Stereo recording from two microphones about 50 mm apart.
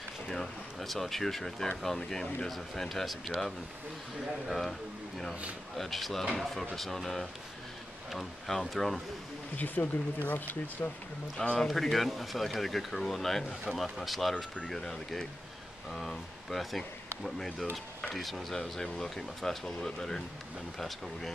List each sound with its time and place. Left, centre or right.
0.3 s speech: centre
5.8 s speech: centre
9.8 s speech: left
10.2 s speech: left
11.3 s speech: centre
13.7 s speech: centre
14.3 s speech: centre